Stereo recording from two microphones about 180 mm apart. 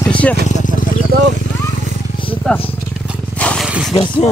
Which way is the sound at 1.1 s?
60° right (ahead or behind).